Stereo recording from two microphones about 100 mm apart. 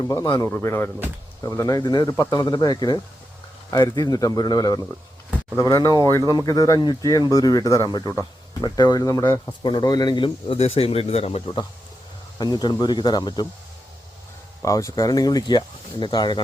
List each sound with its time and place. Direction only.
0.1 s speech: 40° left (ahead or behind)
0.4 s speech: 20° left (ahead or behind)
1.4 s speech: 35° left (ahead or behind)
9.2 s speech: 20° left (ahead or behind)
9.6 s speech: 50° left (ahead or behind); by 11.4 s 90° left
12.4 s speech: 45° left (ahead or behind)
14.6 s speech: 30° left (ahead or behind); by 16.4 s 50° left (ahead or behind)